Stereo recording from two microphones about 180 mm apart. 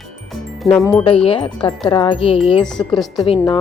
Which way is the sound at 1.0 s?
30° left (ahead or behind).